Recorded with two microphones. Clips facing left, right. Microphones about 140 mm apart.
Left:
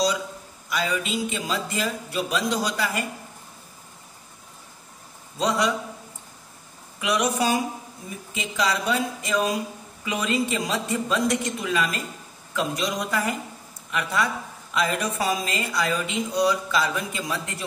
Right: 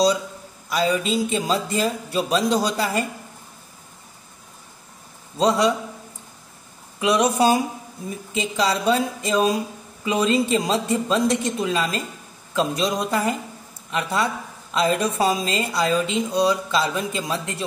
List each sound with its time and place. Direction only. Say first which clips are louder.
0.7 s speech: right 5 dB; 35° right (ahead or behind)
5.4 s a woman's voice: right 5 dB; 30° right (ahead or behind)
7.0 s a woman's voice: right 5 dB; 30° right (ahead or behind)